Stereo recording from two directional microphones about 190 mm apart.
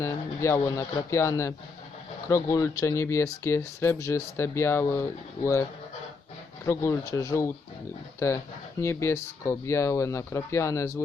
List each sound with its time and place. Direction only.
0.0 s speech: 15° left (ahead or behind)
6.7 s speech: 15° left (ahead or behind)
8.8 s speech: 15° left (ahead or behind)